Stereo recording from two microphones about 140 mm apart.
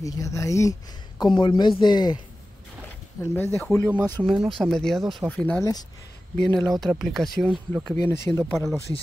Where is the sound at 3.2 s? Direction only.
20° left (ahead or behind).